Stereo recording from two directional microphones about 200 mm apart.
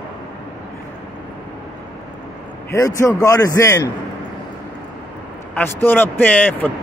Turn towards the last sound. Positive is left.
turn(degrees=10)  # may be behind; listen again after turning